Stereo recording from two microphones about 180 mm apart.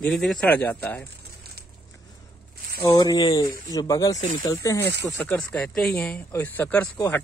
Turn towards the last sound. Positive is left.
turn(degrees=15)  # may be behind; listen again after turning